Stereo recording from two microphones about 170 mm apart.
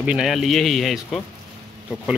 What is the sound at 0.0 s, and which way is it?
Speech, 5° right (ahead or behind).